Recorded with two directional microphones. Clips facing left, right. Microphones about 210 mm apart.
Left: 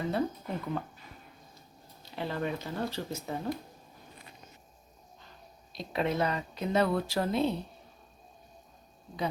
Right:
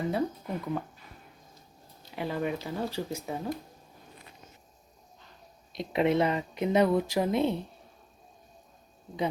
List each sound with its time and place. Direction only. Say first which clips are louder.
0.1 s speech: right 1 dB; 5° right (ahead or behind)
2.1 s speech: right 2 dB; 10° right (ahead or behind)
5.7 s speech: right 5 dB; 20° right (ahead or behind)